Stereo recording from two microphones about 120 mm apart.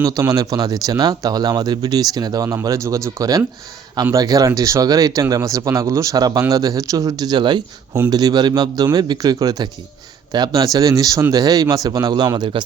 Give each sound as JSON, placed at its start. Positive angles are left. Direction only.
{"t": 0.0, "sound": "speech", "side_deg": -30}